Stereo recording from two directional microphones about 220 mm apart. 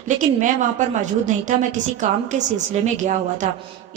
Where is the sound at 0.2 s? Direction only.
35° right (ahead or behind).